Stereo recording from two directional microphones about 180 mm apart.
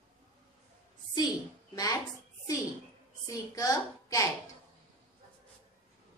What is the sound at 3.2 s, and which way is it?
A woman's voice, 20° left (ahead or behind).